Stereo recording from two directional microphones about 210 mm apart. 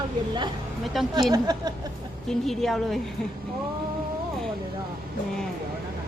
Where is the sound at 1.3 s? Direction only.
20° right (ahead or behind).